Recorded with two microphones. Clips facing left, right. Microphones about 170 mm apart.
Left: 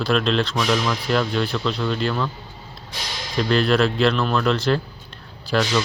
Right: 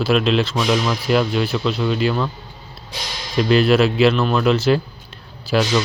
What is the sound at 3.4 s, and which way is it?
Speech, 10° right (ahead or behind).